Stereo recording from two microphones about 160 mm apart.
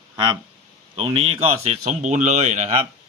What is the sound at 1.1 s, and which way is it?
Speech, 35° right (ahead or behind).